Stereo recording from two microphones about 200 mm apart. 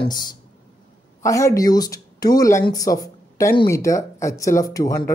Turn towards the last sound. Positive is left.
turn(degrees=15)  # may be behind; listen again after turning